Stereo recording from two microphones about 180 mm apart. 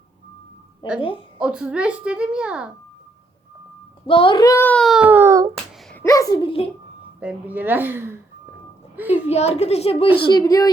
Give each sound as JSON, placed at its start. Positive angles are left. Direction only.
{"t": 0.8, "sound": "speech", "side_deg": 25}
{"t": 1.4, "sound": "a child's voice", "side_deg": -5}
{"t": 4.0, "sound": "a child's voice", "side_deg": 30}
{"t": 5.9, "sound": "a child's voice", "side_deg": 15}
{"t": 7.2, "sound": "speech", "side_deg": -10}
{"t": 9.3, "sound": "a child's voice", "side_deg": 35}
{"t": 10.3, "sound": "speech", "side_deg": 20}